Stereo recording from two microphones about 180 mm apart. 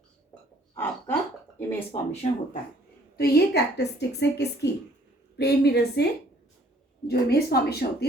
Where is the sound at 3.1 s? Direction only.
60° left (ahead or behind).